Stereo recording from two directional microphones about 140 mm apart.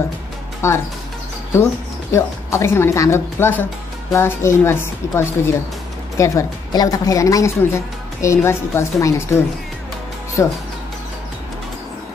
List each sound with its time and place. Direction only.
0.6 s speech: 20° left (ahead or behind)
2.1 s a woman's voice: 20° left (ahead or behind)